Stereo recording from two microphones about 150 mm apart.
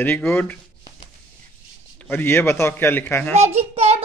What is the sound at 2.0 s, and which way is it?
A man's voice, 15° left (ahead or behind).